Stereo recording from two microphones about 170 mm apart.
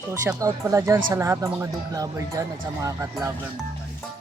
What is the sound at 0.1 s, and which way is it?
Speech, 15° right (ahead or behind).